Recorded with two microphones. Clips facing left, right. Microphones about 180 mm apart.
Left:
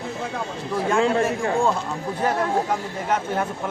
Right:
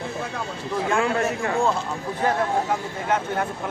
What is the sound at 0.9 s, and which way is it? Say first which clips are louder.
Speech: left 4 dB; 30° left (ahead or behind).